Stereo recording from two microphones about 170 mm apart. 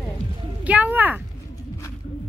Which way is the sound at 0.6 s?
10° right (ahead or behind).